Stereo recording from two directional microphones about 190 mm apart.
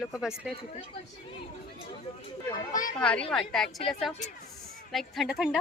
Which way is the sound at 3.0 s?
5° left (ahead or behind).